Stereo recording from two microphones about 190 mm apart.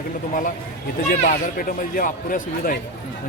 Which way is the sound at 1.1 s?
50° left (ahead or behind).